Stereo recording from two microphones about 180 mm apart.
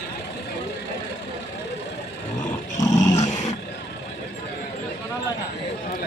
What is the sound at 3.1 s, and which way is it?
Roar, 40° left (ahead or behind).